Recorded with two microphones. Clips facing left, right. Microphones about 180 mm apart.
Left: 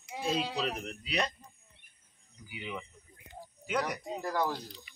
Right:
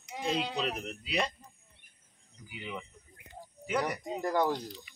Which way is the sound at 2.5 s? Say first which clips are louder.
Even; centre (ahead or behind).